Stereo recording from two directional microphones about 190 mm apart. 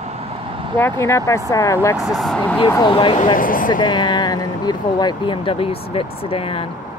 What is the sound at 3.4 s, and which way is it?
Speech, 45° left (ahead or behind).